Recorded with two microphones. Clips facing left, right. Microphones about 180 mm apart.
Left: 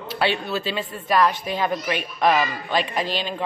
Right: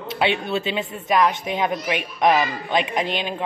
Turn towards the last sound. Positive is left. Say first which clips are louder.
# right 1 dB
turn(degrees=-20)  # may be behind; listen again after turning